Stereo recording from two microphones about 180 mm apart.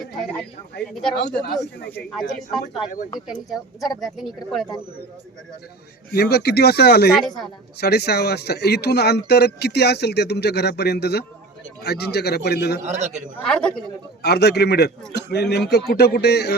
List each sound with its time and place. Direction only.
0.2 s a sound: 5° left (ahead or behind)
1.2 s speech: 65° left (ahead or behind)
1.9 s speech: 5° left (ahead or behind)
6.1 s speech: 65° left (ahead or behind)
12.8 s a man's voice: 40° right (ahead or behind)
13.5 s speech: 5° left (ahead or behind)
14.2 s speech: 65° left (ahead or behind)